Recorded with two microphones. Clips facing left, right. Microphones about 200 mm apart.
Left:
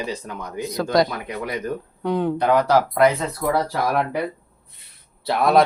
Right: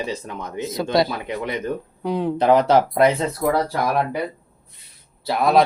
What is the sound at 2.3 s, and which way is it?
Speech, 25° right (ahead or behind).